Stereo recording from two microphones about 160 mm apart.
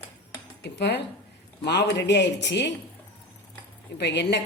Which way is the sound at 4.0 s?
90° left.